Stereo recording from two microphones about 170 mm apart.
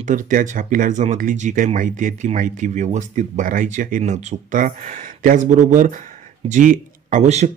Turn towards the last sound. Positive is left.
turn(degrees=-40)  # may be behind; listen again after turning